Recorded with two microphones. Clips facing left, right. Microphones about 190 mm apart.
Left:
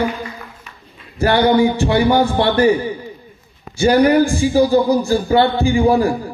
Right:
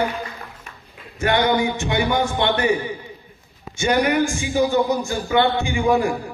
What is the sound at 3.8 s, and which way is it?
A man's voice, 35° left (ahead or behind).